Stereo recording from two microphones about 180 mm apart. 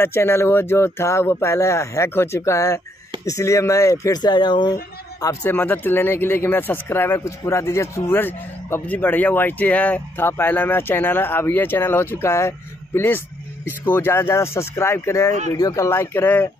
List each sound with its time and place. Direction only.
0.0 s speech: 15° left (ahead or behind)